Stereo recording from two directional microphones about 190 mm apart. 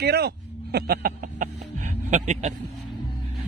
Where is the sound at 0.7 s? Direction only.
55° right (ahead or behind); by 2.5 s 40° right (ahead or behind).